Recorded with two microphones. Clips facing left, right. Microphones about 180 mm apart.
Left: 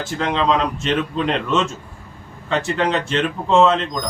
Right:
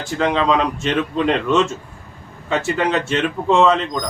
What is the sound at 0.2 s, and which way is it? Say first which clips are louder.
Speech: right 2 dB; centre (ahead or behind).